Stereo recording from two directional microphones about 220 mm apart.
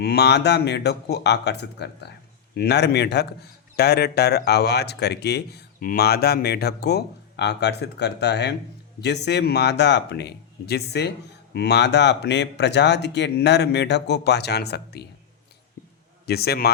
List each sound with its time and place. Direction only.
0.0 s a man's voice: 50° left (ahead or behind)
16.2 s a man's voice: 45° left (ahead or behind)